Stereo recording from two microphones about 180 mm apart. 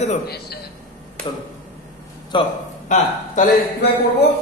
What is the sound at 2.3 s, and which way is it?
Speech, 25° left (ahead or behind).